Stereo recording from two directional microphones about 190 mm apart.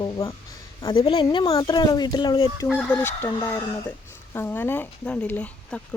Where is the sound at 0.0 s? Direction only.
15° left (ahead or behind).